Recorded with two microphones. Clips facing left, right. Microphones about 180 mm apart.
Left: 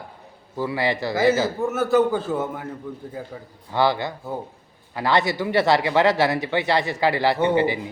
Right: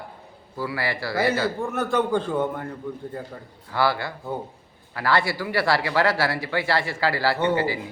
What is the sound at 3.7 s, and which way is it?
Speech, 20° left (ahead or behind).